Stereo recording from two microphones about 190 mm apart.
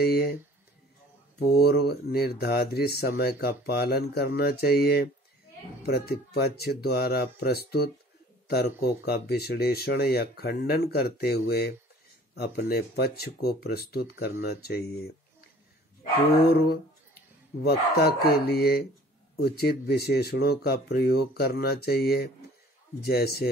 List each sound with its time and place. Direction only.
0.0 s speech: 55° left (ahead or behind)
1.5 s speech: 55° left (ahead or behind)
17.6 s speech: 55° left (ahead or behind)